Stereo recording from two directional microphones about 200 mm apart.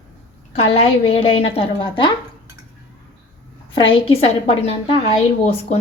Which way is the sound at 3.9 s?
30° left (ahead or behind).